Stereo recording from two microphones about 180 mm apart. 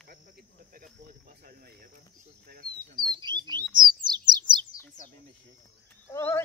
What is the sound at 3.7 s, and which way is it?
Bird, 50° right (ahead or behind).